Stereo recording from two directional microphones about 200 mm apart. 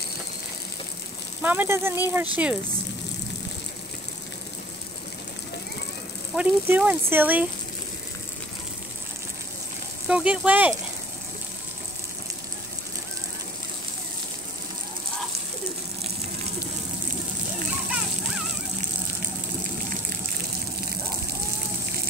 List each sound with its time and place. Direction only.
1.4 s speech: 10° right (ahead or behind)
6.3 s speech: 5° right (ahead or behind)
10.0 s speech: 5° right (ahead or behind)